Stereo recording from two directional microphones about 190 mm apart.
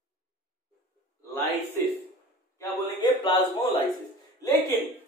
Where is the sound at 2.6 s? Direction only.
20° left (ahead or behind).